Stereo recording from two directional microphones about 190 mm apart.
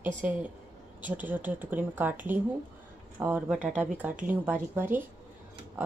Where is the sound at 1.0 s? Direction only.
10° right (ahead or behind).